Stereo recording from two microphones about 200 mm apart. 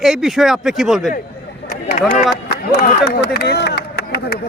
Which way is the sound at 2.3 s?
55° left (ahead or behind).